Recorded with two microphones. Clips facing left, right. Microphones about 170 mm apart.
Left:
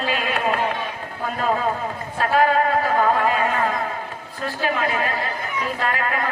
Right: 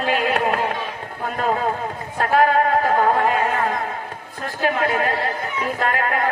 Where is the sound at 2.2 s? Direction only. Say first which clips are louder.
Right 1 dB; 55° right (ahead or behind).